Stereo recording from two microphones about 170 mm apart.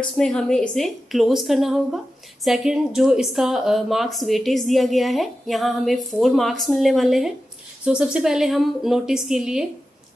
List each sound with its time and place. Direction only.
0.2 s speech: 5° left (ahead or behind)